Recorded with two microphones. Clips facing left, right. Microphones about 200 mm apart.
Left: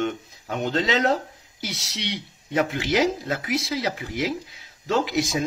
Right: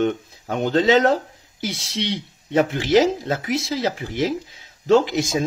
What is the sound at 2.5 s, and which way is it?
Speech, 30° right (ahead or behind).